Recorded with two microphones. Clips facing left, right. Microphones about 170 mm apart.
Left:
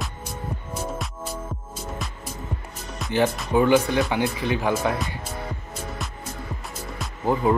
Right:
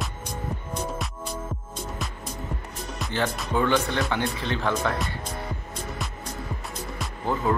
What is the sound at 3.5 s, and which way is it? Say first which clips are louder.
Speech: left 5 dB; 10° left (ahead or behind).